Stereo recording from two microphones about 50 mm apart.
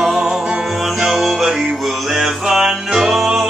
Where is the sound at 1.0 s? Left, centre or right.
Centre.